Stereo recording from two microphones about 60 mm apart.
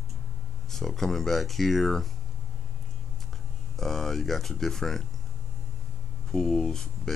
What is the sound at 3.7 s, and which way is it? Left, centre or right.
Speech, centre.